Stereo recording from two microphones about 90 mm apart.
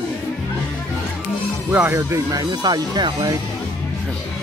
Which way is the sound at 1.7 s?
20° right (ahead or behind).